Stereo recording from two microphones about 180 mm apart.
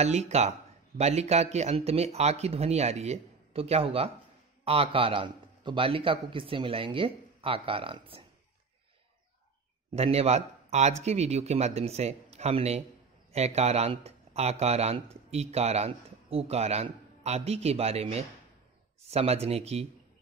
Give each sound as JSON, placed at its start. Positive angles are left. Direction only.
{"t": 0.0, "sound": "a man's voice", "side_deg": -35}
{"t": 9.9, "sound": "speech", "side_deg": -35}